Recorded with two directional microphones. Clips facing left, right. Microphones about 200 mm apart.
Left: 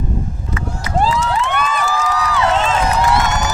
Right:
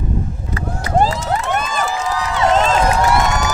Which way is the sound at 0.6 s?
45° right (ahead or behind).